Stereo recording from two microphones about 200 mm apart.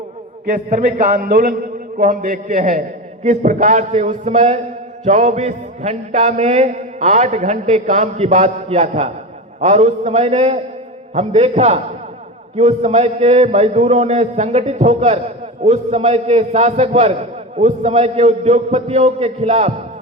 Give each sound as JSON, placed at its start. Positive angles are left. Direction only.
{"t": 0.4, "sound": "a man's voice", "side_deg": -40}